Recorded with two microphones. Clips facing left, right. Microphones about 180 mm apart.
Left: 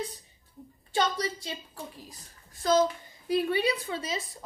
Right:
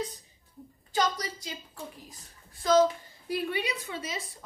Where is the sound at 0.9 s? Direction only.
30° left (ahead or behind).